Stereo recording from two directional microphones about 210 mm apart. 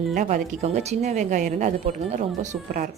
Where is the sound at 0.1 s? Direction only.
35° right (ahead or behind).